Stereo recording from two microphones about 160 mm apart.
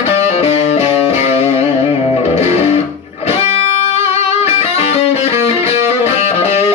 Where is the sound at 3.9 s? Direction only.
40° left (ahead or behind).